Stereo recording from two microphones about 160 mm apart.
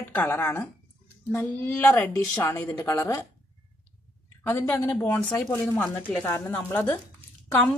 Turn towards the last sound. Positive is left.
turn(degrees=10)  # may be behind; listen again after turning